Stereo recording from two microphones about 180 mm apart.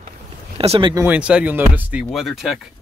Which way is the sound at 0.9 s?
10° right (ahead or behind).